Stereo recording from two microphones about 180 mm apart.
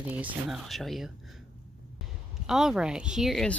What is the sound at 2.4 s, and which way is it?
Speech, 5° right (ahead or behind).